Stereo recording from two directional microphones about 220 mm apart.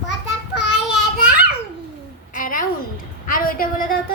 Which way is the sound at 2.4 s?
40° left (ahead or behind).